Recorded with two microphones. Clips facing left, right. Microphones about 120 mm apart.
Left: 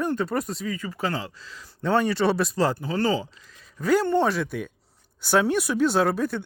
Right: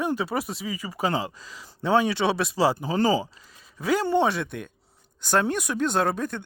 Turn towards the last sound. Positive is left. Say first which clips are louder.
# left 2 dB
turn(degrees=5)  # may be behind; listen again after turning